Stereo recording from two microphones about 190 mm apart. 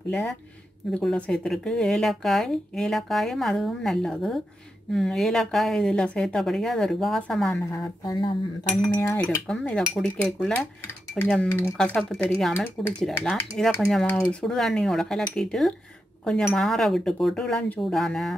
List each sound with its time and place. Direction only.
0.1 s speech: 5° left (ahead or behind)
7.7 s speech: 20° left (ahead or behind)
8.9 s dishes: 10° left (ahead or behind)
12.5 s speech: 10° left (ahead or behind)